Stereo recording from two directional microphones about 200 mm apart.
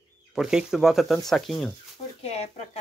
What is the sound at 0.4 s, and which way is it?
Speech, 5° right (ahead or behind).